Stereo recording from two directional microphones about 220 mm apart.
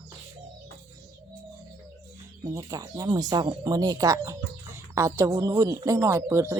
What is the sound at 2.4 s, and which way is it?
Speech, 15° right (ahead or behind).